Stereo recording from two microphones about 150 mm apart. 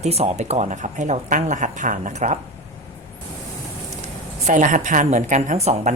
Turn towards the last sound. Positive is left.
turn(degrees=-50)  # may be behind; listen again after turning